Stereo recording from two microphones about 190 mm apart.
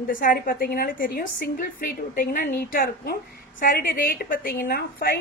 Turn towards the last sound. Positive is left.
turn(degrees=50)  # may be behind; listen again after turning